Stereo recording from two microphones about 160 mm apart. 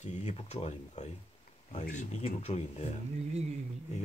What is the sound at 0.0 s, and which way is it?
Speech, 45° left (ahead or behind).